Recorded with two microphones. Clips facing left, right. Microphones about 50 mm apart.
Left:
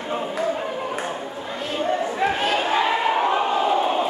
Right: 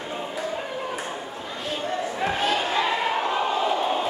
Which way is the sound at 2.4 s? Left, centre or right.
Centre.